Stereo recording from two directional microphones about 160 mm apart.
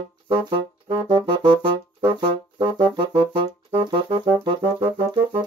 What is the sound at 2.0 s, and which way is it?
Music, 25° right (ahead or behind).